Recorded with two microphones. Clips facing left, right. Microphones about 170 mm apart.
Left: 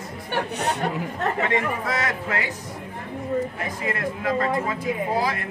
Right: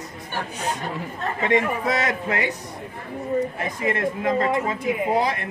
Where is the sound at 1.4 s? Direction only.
20° right (ahead or behind).